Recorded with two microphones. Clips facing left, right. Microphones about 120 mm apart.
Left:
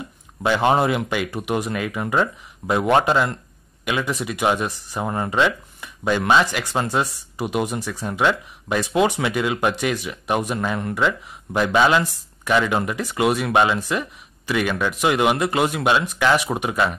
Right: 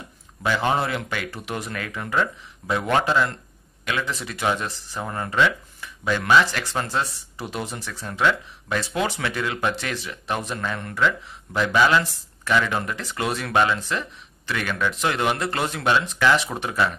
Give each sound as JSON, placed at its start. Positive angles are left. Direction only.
{"t": 0.4, "sound": "speech", "side_deg": 20}